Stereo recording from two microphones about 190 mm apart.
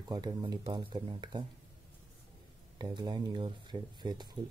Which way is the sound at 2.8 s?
25° right (ahead or behind).